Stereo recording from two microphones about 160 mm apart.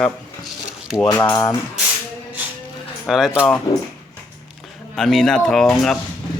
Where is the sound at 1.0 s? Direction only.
20° left (ahead or behind).